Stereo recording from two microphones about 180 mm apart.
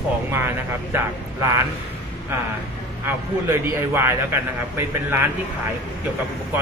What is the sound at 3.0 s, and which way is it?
A man's voice, 15° right (ahead or behind).